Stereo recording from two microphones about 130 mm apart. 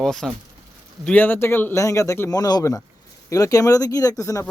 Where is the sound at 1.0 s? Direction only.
15° left (ahead or behind).